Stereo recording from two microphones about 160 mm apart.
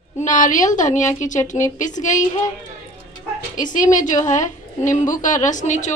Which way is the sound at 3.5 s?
55° left (ahead or behind).